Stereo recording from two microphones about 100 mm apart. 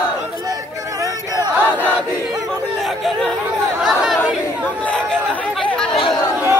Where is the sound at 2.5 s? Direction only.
Centre (ahead or behind).